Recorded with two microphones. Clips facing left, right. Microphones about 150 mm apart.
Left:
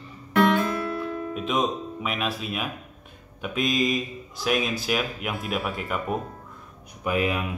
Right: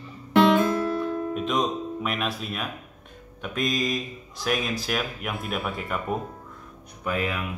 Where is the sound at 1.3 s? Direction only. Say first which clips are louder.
Left 3 dB; centre (ahead or behind).